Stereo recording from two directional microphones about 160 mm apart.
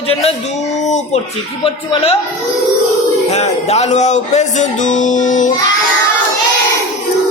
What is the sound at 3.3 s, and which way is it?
A man's voice, 45° left (ahead or behind).